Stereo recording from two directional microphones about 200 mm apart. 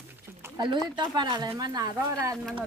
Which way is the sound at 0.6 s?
20° right (ahead or behind).